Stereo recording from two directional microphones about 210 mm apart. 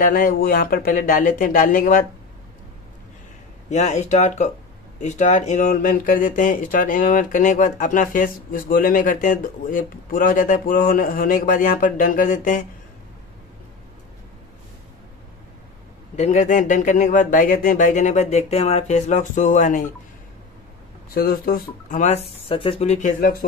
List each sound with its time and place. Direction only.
0.0 s speech: 40° left (ahead or behind)
3.7 s speech: 35° left (ahead or behind)
16.2 s speech: 35° left (ahead or behind)
21.1 s speech: 45° left (ahead or behind)